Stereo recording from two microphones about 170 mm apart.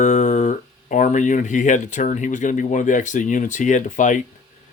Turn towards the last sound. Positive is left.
turn(degrees=50)  # may be behind; listen again after turning